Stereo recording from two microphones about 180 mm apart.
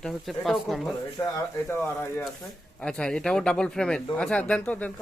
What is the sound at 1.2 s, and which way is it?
Speech, 20° left (ahead or behind).